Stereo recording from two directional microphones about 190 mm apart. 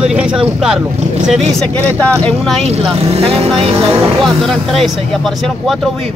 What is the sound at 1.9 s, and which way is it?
Speech, 5° left (ahead or behind).